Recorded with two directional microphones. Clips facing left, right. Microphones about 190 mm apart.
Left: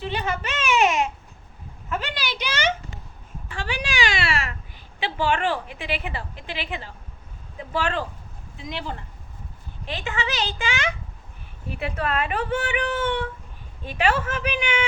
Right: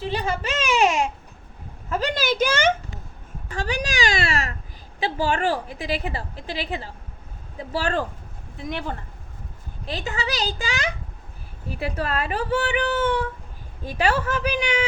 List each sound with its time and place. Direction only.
0.1 s a woman's voice: 35° right (ahead or behind)
8.5 s speech: 55° right (ahead or behind)
9.8 s a woman's voice: 35° right (ahead or behind)